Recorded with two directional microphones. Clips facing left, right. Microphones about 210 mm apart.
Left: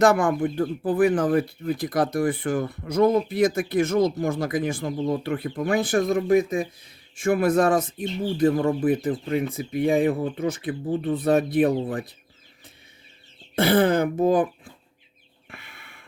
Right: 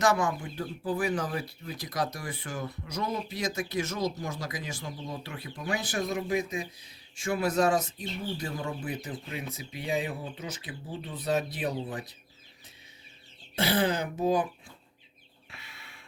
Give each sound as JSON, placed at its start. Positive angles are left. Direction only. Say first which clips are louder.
{"t": 0.0, "sound": "speech", "louder": "left 8 dB", "side_deg": 55}
{"t": 13.6, "sound": "speech", "louder": "left 8 dB", "side_deg": 55}
{"t": 15.4, "sound": "a sound", "louder": "left 5 dB", "side_deg": 55}